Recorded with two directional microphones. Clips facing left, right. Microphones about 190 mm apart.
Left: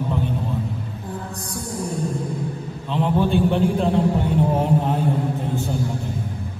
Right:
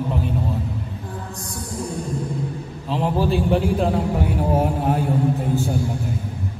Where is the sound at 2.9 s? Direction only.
5° right (ahead or behind).